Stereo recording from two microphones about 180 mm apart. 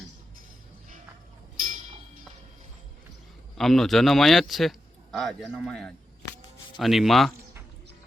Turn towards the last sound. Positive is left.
turn(degrees=0)  # may be behind; listen again after turning